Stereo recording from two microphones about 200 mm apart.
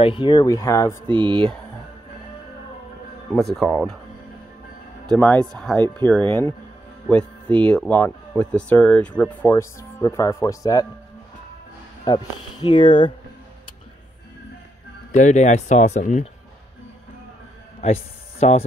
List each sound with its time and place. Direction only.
0.0 s speech: 25° left (ahead or behind)
1.0 s speech: 25° right (ahead or behind)
3.3 s speech: centre (ahead or behind)
5.1 s speech: 5° left (ahead or behind)
12.1 s speech: 20° left (ahead or behind)
15.1 s speech: 35° left (ahead or behind)
17.8 s speech: 35° left (ahead or behind)